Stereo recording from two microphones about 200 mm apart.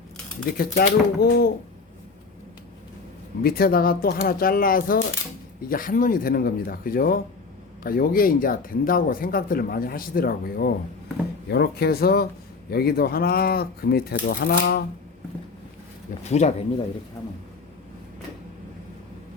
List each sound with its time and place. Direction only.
0.5 s speech: 50° left (ahead or behind)
3.4 s speech: 50° left (ahead or behind)
16.2 s speech: 35° left (ahead or behind)